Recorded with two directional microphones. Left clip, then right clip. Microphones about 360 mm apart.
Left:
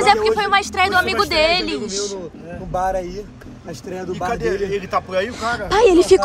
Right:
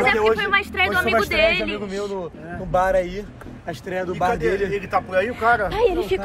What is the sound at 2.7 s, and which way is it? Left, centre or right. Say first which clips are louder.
Speech: right 2 dB; right.